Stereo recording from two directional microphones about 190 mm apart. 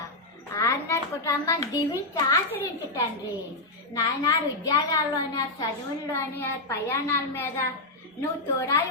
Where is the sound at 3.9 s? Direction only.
15° left (ahead or behind).